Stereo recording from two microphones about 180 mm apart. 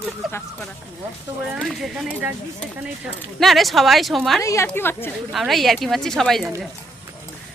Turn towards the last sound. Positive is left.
turn(degrees=0)  # may be behind; listen again after turning